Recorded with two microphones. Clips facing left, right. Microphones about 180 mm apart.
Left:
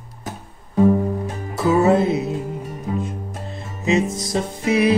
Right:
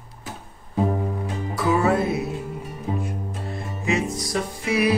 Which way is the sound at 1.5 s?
25° left (ahead or behind).